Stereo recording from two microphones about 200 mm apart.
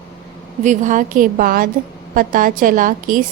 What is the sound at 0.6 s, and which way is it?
A woman's voice, 40° right (ahead or behind).